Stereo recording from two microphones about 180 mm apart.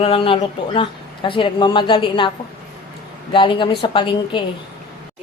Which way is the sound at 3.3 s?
25° left (ahead or behind).